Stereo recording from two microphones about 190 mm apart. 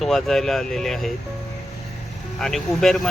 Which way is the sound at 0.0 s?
Centre (ahead or behind).